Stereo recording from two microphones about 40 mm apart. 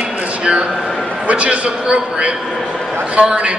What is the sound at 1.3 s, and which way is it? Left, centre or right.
A man's voice, right.